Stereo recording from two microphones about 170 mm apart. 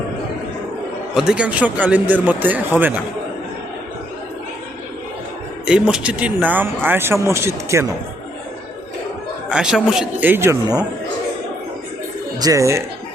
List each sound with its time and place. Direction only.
1.1 s speech: 5° right (ahead or behind)
5.6 s speech: 5° right (ahead or behind)
9.5 s speech: 5° right (ahead or behind); by 10.8 s 20° right (ahead or behind)
12.4 s speech: 20° right (ahead or behind)